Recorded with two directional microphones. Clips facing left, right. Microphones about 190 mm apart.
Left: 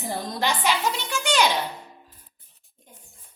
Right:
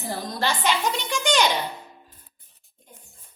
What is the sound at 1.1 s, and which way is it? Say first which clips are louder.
Speech: right 3 dB; 5° left (ahead or behind).